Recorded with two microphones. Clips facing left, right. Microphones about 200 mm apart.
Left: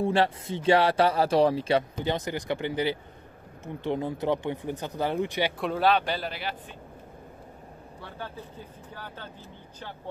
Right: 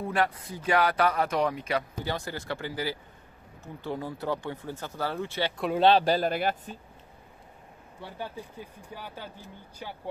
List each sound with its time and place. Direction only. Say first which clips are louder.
0.0 s speech: left 4 dB; 30° left (ahead or behind)
5.8 s speech: right 4 dB; 30° right (ahead or behind); by 6.8 s 45° right (ahead or behind)
8.0 s speech: right 2 dB; 15° right (ahead or behind)